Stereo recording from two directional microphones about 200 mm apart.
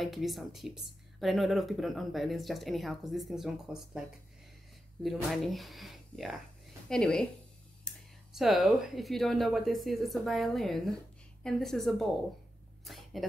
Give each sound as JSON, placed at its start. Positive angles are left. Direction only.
{"t": 0.0, "sound": "speech", "side_deg": 0}
{"t": 5.0, "sound": "speech", "side_deg": 0}
{"t": 12.8, "sound": "a sound", "side_deg": 0}